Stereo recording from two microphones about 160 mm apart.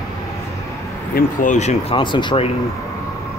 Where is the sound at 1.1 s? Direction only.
50° left (ahead or behind).